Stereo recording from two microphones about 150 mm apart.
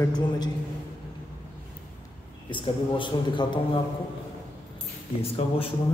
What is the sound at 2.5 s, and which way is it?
A man's voice, 35° left (ahead or behind).